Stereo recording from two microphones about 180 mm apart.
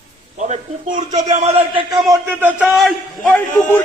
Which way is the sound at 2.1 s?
10° right (ahead or behind).